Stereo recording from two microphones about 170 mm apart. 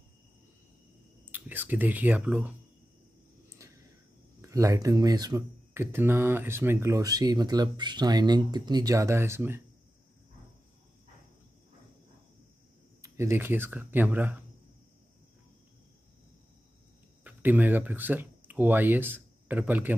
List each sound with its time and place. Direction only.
1.3 s speech: 10° right (ahead or behind)
3.4 s a sound: 20° right (ahead or behind)
4.4 s speech: 20° right (ahead or behind)
13.0 s speech: 15° right (ahead or behind)
17.2 s speech: 10° right (ahead or behind)